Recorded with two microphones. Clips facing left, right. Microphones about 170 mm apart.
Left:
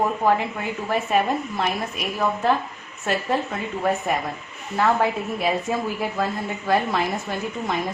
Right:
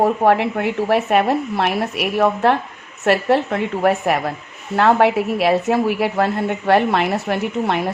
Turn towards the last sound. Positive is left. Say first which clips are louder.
# right 6 dB
turn(degrees=-70)  # may be behind; listen again after turning